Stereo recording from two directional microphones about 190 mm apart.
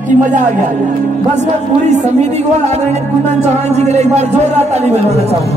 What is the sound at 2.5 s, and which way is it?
Speech, 35° right (ahead or behind).